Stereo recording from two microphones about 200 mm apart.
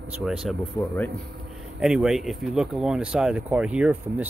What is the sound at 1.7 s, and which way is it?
Speech, 5° right (ahead or behind).